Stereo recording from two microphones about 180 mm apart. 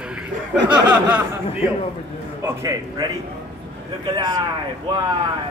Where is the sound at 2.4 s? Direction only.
20° right (ahead or behind).